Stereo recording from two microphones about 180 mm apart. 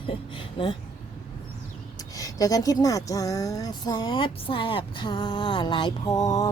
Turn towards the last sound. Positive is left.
turn(degrees=20)  # may be behind; listen again after turning